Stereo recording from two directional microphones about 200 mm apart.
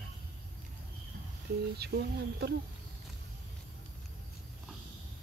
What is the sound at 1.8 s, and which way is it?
Speech, 55° right (ahead or behind).